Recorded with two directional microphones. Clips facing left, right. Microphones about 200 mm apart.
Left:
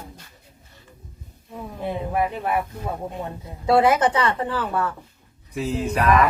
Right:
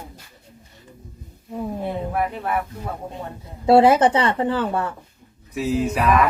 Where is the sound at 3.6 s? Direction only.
30° right (ahead or behind).